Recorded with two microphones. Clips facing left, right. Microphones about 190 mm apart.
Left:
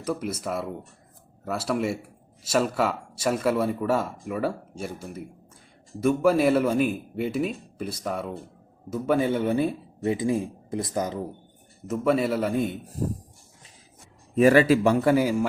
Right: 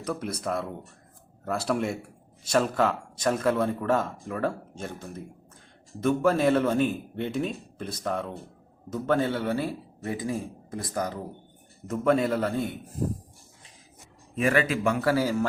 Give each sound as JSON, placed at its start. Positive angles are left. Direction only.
{"t": 0.0, "sound": "a man's voice", "side_deg": 5}
{"t": 11.9, "sound": "a man's voice", "side_deg": 5}
{"t": 14.3, "sound": "speech", "side_deg": 35}
{"t": 15.0, "sound": "speech", "side_deg": 15}